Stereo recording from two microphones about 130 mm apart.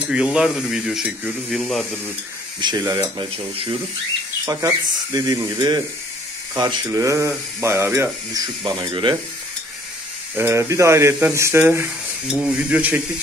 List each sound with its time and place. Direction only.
0.1 s speech: 5° right (ahead or behind)
2.6 s speech: 30° right (ahead or behind)
4.5 s speech: 30° right (ahead or behind)
10.3 s speech: 20° right (ahead or behind)